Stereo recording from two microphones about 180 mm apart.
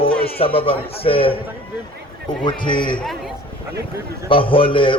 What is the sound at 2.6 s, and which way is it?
Speech, 25° left (ahead or behind).